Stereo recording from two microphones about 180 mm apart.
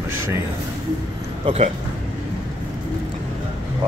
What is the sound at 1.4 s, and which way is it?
Speech, 35° right (ahead or behind).